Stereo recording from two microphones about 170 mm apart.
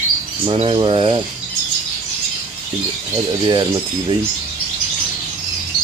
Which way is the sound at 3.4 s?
25° right (ahead or behind).